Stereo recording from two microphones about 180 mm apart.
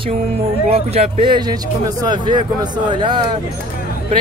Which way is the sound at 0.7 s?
35° right (ahead or behind).